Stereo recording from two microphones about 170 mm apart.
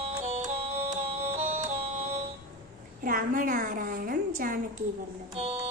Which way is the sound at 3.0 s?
55° right (ahead or behind).